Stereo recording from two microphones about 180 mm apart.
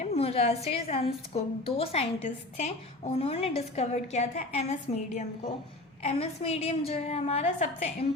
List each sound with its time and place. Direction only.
0.0 s a woman's voice: 35° left (ahead or behind)